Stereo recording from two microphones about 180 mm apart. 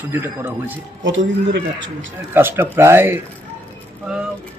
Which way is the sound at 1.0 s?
90° right.